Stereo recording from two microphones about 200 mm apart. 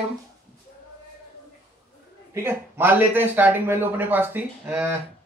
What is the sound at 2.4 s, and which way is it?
Speech, 10° right (ahead or behind).